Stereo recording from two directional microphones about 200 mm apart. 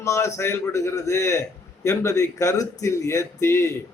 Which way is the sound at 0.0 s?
15° left (ahead or behind).